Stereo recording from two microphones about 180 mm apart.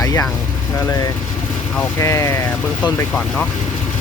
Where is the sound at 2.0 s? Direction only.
15° left (ahead or behind).